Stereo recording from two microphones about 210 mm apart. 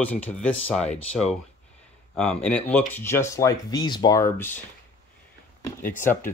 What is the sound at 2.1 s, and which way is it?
Speech, 5° left (ahead or behind).